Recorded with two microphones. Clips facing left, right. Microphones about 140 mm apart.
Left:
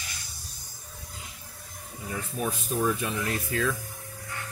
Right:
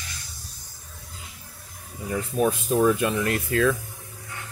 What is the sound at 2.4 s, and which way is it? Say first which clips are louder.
Speech: right 8 dB; 70° right (ahead or behind).